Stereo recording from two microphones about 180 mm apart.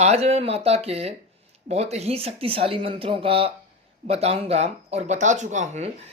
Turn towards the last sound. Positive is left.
turn(degrees=-35)  # may be behind; listen again after turning